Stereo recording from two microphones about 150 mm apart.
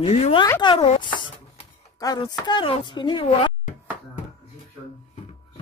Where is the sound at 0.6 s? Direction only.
30° left (ahead or behind).